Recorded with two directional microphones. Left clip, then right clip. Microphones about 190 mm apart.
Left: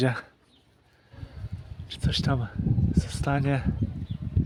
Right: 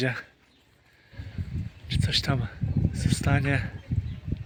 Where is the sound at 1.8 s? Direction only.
10° left (ahead or behind).